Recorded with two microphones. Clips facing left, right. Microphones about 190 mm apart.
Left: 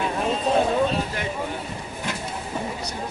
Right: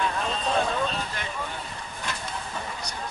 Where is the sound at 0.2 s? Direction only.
10° left (ahead or behind).